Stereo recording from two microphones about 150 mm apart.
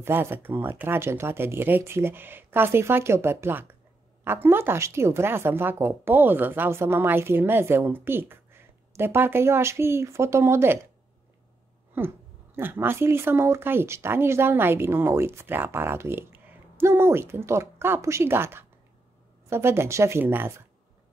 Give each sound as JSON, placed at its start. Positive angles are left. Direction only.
{"t": 0.0, "sound": "speech", "side_deg": -15}
{"t": 12.5, "sound": "speech", "side_deg": -15}